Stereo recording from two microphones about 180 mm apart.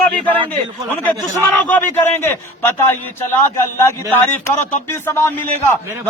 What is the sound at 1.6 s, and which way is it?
A man's voice, 10° left (ahead or behind).